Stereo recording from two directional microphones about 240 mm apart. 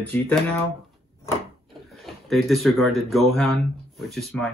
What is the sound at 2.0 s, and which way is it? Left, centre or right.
Speech, centre.